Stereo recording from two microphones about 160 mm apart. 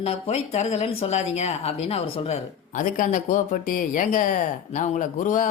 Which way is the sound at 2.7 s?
55° left (ahead or behind).